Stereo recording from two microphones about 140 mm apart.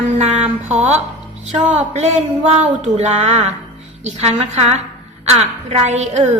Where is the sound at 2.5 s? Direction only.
50° right (ahead or behind).